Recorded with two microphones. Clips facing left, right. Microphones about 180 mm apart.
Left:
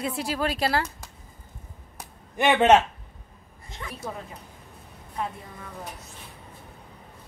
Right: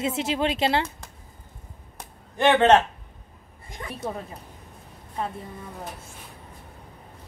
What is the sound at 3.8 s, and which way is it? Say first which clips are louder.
Speech: right 2 dB; 35° right (ahead or behind).